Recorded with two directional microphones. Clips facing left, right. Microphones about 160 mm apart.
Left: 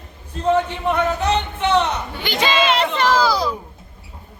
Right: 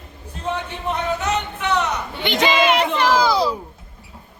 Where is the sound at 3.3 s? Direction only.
25° right (ahead or behind).